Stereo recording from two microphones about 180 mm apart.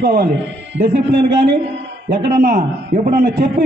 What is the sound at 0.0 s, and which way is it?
A man's voice, 55° right (ahead or behind).